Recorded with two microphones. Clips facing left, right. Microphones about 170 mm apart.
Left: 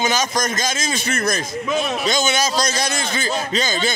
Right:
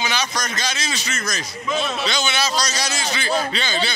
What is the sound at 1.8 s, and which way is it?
Speech, 15° left (ahead or behind).